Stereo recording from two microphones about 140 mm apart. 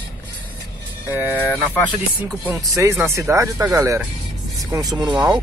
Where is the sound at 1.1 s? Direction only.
10° right (ahead or behind).